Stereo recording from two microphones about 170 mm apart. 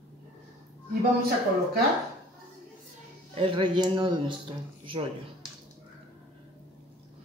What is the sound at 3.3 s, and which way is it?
Speech, 30° right (ahead or behind).